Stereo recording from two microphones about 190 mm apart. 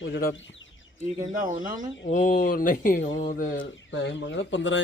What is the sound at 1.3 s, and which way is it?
Speech, 45° right (ahead or behind).